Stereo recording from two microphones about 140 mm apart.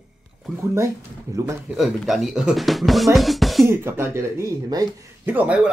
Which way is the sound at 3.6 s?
15° right (ahead or behind).